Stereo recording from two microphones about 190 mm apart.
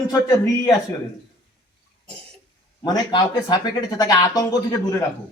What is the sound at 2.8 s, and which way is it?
Speech, 20° left (ahead or behind).